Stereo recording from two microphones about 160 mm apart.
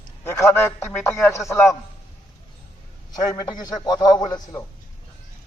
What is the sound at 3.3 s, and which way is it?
A man's voice, 25° left (ahead or behind).